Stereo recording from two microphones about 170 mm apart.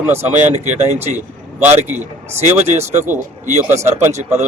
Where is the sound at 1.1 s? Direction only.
10° right (ahead or behind).